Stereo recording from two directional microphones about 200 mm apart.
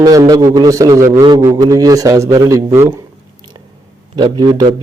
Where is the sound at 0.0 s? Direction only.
20° right (ahead or behind).